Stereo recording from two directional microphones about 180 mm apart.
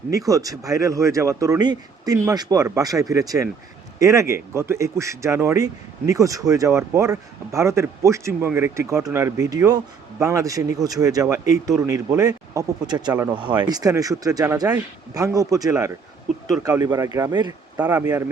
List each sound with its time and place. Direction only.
0.3 s speech: 20° right (ahead or behind)
17.7 s speech: 10° right (ahead or behind)